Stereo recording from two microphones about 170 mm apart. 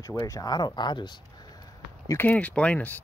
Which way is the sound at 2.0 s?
15° left (ahead or behind).